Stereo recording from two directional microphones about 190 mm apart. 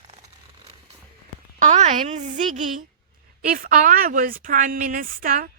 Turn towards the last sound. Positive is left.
turn(degrees=-45)  # may be behind; listen again after turning